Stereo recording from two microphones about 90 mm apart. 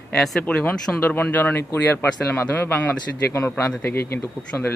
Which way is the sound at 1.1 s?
20° left (ahead or behind).